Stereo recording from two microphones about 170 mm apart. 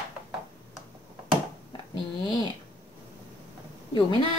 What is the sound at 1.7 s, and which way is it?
Speech, 25° left (ahead or behind).